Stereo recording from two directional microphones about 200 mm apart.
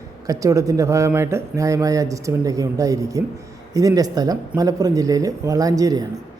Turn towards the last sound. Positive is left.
turn(degrees=-15)  # may be behind; listen again after turning